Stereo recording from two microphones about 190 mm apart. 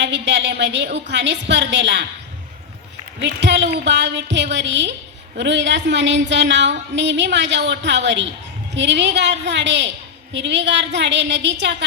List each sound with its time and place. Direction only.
0.0 s a woman's voice: 65° right (ahead or behind)
3.2 s a woman's voice: 65° right (ahead or behind)